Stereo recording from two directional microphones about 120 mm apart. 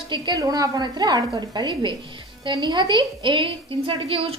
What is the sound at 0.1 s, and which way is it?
A woman's voice, 35° right (ahead or behind).